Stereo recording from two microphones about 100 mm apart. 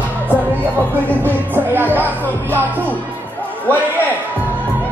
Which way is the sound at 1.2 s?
20° right (ahead or behind).